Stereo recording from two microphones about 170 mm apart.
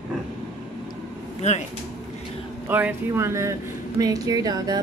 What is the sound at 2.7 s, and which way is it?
A woman's voice, 10° right (ahead or behind).